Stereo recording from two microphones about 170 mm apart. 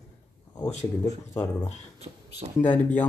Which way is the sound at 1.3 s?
15° left (ahead or behind).